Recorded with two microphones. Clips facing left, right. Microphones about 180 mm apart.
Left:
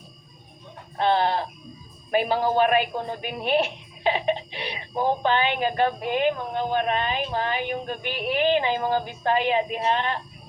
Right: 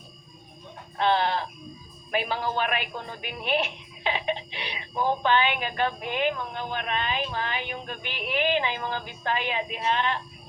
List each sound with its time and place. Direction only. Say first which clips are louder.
0.9 s a woman's voice: left 2 dB; 40° left (ahead or behind)